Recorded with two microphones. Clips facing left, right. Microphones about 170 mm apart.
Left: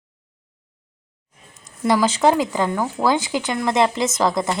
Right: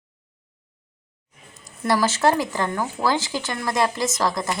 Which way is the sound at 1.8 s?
15° left (ahead or behind).